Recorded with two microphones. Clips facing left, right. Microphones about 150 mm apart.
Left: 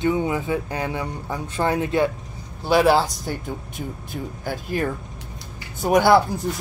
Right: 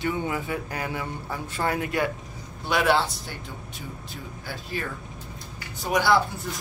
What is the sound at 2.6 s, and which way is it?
Speech, 35° left (ahead or behind).